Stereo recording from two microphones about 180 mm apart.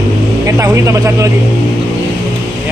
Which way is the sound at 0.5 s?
15° right (ahead or behind).